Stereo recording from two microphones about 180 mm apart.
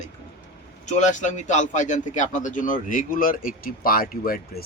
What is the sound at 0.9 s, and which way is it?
Speech, 40° left (ahead or behind).